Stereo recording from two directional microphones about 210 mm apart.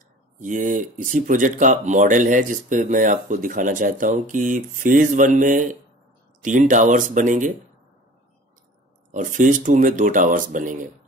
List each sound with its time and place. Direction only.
0.4 s speech: 35° right (ahead or behind)
9.1 s speech: 40° right (ahead or behind)